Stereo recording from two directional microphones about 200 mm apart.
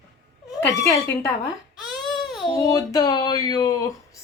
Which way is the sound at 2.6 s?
20° left (ahead or behind).